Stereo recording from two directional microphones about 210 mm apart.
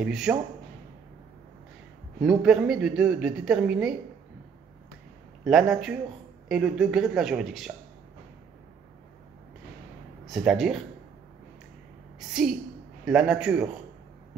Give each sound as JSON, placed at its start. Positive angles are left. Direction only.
{"t": 0.0, "sound": "speech", "side_deg": -5}
{"t": 2.2, "sound": "speech", "side_deg": -5}
{"t": 5.4, "sound": "speech", "side_deg": 0}
{"t": 10.2, "sound": "speech", "side_deg": 0}
{"t": 13.0, "sound": "speech", "side_deg": -5}